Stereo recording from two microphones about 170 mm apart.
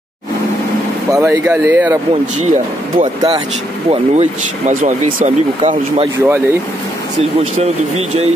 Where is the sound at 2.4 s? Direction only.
40° right (ahead or behind).